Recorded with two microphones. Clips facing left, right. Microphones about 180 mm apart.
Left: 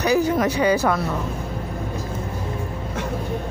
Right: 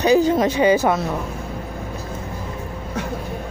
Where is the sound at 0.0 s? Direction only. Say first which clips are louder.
Right 3 dB; 25° right (ahead or behind).